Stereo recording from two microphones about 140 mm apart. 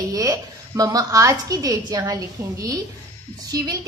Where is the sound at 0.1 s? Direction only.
25° right (ahead or behind).